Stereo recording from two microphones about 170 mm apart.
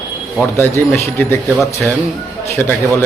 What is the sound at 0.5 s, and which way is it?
Speech, 15° left (ahead or behind).